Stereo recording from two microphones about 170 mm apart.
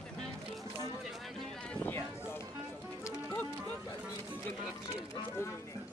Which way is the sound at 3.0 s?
20° left (ahead or behind).